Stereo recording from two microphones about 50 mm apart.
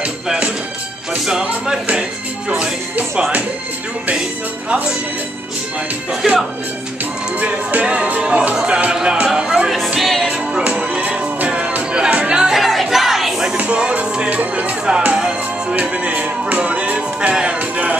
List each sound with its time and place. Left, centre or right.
1.2 s speech: centre
6.2 s speech: centre
7.3 s speech: right
9.9 s music: centre
10.2 s music: right
12.5 s music: centre
13.6 s music: right
15.7 s music: right